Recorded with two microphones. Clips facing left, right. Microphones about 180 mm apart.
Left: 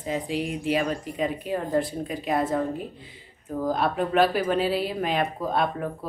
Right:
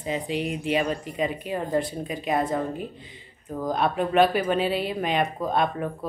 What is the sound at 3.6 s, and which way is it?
Speech, centre (ahead or behind).